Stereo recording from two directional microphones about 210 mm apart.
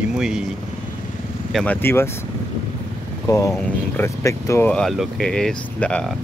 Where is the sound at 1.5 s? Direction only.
5° left (ahead or behind).